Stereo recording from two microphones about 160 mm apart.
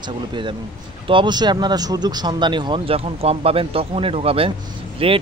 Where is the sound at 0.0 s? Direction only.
30° right (ahead or behind).